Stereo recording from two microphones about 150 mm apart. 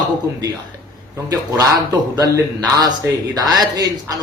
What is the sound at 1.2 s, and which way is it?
A man's voice, 25° right (ahead or behind).